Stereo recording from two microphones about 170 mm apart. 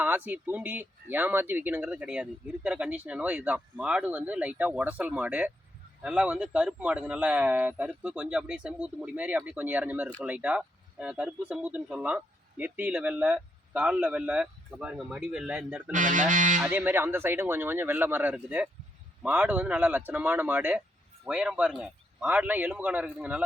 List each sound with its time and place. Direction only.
0.0 s speech: 10° right (ahead or behind)
15.9 s music: 50° right (ahead or behind)
16.6 s speech: 10° right (ahead or behind)